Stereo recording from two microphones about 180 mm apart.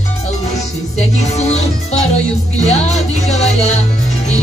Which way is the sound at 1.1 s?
40° left (ahead or behind).